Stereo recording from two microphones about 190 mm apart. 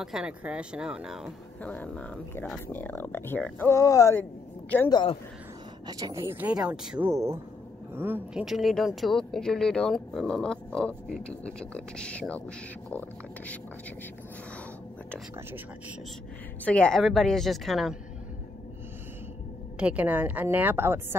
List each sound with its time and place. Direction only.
0.0 s speech: 5° right (ahead or behind)
1.6 s speech: 10° left (ahead or behind)
4.8 s a man's voice: 25° left (ahead or behind)
5.9 s a woman's voice: 20° right (ahead or behind); by 13.0 s 5° left (ahead or behind)
16.6 s speech: 5° left (ahead or behind)
19.8 s a woman's voice: 5° right (ahead or behind)